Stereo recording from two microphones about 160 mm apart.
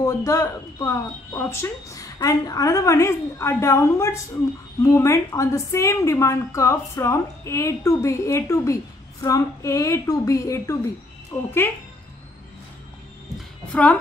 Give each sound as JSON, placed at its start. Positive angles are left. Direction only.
{"t": 0.0, "sound": "a woman's voice", "side_deg": 20}